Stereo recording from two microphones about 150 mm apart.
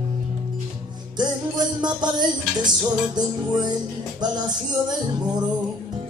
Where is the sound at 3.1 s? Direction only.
30° right (ahead or behind).